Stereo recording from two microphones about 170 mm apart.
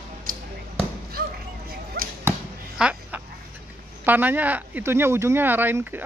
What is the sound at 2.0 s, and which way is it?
Arrow, 60° right (ahead or behind).